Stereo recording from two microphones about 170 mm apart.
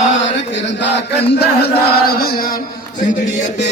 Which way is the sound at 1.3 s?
65° left (ahead or behind).